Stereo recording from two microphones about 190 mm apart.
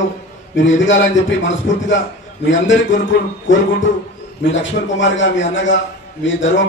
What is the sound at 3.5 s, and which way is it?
Speech, 80° left.